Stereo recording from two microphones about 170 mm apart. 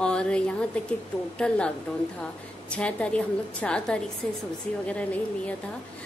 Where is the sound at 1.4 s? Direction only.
5° left (ahead or behind).